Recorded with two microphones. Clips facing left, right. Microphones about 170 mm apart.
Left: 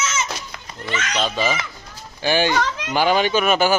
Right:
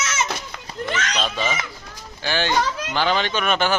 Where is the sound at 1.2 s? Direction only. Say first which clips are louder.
Left 6 dB; 5° left (ahead or behind).